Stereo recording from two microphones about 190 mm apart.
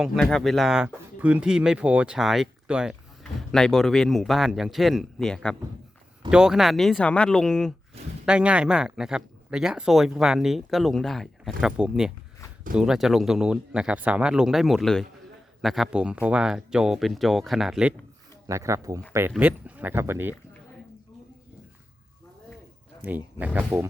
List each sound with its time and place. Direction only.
0.0 s speech: centre (ahead or behind)
18.4 s speech: 15° right (ahead or behind)
23.0 s speech: 10° right (ahead or behind)